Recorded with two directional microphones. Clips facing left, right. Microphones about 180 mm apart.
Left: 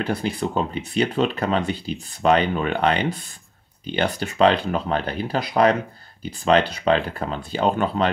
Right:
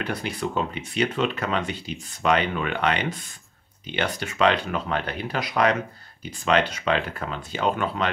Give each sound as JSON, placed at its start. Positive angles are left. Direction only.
{"t": 0.0, "sound": "speech", "side_deg": 30}